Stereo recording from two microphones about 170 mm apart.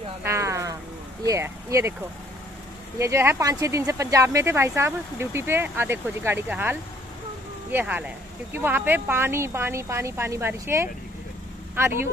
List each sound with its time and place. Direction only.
0.2 s a sound: 15° right (ahead or behind)
1.2 s speech: 15° right (ahead or behind)
3.0 s speech: 15° right (ahead or behind)